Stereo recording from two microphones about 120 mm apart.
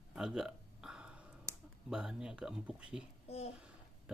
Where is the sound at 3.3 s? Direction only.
60° left (ahead or behind).